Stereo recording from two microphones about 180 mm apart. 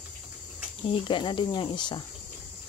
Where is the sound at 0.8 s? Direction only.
30° left (ahead or behind).